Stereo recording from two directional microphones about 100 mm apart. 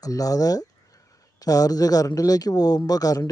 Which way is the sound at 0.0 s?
35° left (ahead or behind).